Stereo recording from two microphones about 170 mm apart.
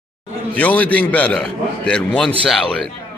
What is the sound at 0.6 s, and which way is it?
A man's voice, 10° left (ahead or behind).